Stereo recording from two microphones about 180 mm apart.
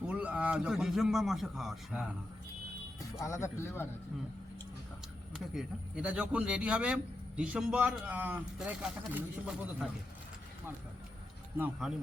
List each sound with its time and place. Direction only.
0.1 s a man's voice: 5° right (ahead or behind)
3.2 s speech: 15° left (ahead or behind)
5.3 s a man's voice: 5° right (ahead or behind)
11.5 s a man's voice: 10° right (ahead or behind)